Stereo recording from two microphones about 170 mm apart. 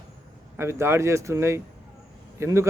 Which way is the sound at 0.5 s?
15° right (ahead or behind).